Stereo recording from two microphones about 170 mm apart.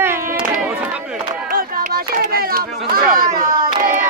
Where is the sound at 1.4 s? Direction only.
55° right (ahead or behind).